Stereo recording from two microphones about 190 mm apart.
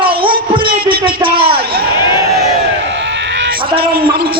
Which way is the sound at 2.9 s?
70° right (ahead or behind).